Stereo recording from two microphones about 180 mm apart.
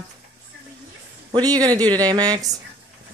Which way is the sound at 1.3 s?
20° right (ahead or behind).